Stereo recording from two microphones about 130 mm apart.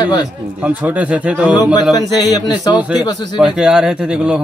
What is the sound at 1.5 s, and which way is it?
A man's voice, 30° left (ahead or behind).